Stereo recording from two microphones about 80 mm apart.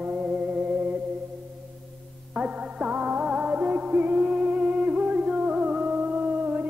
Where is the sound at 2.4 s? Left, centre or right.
Centre.